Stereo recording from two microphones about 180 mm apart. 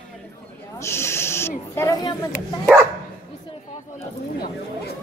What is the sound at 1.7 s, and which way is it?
Speech, 15° left (ahead or behind).